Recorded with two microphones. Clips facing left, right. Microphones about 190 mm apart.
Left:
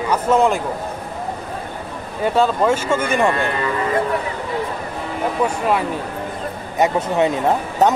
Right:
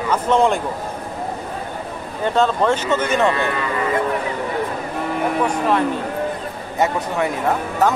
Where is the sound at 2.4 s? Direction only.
10° left (ahead or behind).